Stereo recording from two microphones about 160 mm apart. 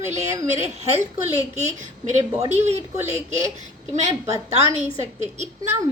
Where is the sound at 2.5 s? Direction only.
45° right (ahead or behind).